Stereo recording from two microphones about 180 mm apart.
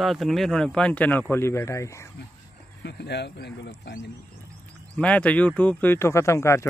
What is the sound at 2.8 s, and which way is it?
Speech, 70° left (ahead or behind).